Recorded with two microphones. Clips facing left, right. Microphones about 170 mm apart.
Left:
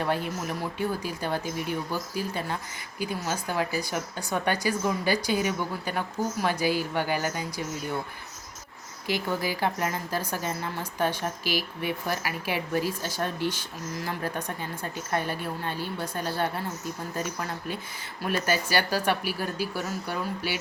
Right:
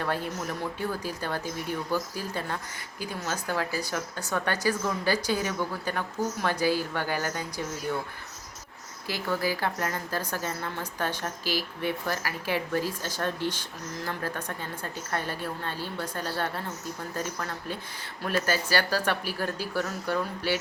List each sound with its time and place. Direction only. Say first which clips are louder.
0.0 s a woman's voice: left 2 dB; 15° left (ahead or behind)
9.0 s a woman's voice: left 1 dB; 15° left (ahead or behind)
18.3 s a woman's voice: even; 15° left (ahead or behind)